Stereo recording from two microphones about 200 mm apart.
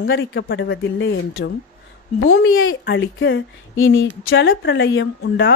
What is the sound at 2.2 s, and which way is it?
Speech, 90° left.